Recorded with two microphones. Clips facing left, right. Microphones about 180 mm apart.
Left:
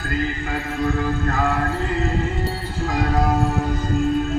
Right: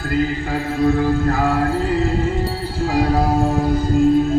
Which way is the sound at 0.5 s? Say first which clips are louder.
Right 7 dB; 35° right (ahead or behind).